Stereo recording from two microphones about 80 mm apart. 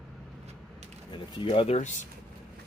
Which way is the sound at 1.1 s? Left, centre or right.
Left.